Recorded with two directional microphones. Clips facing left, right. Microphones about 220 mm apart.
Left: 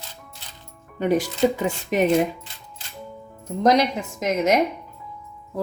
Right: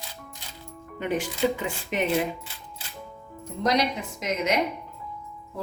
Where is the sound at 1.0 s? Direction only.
40° left (ahead or behind).